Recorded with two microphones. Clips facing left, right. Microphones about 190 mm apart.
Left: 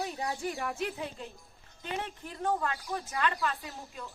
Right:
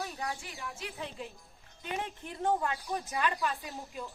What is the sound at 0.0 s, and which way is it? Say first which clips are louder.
Bird: left 3 dB; 25° left (ahead or behind).